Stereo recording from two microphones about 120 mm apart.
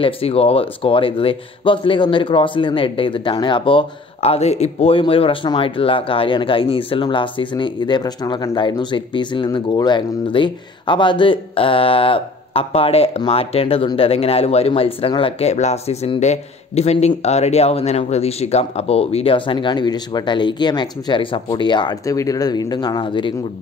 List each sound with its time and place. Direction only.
0.0 s speech: 55° left (ahead or behind)
4.2 s speech: 65° left (ahead or behind); by 23.3 s 45° left (ahead or behind)